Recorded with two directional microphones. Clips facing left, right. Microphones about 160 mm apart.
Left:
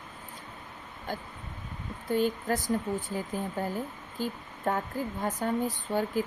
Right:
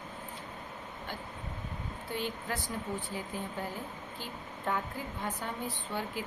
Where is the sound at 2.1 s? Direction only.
45° left (ahead or behind).